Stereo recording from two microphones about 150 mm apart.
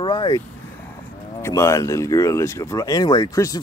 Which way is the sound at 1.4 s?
20° left (ahead or behind).